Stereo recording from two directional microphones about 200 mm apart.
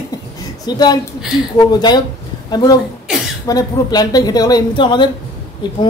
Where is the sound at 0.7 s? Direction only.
20° left (ahead or behind).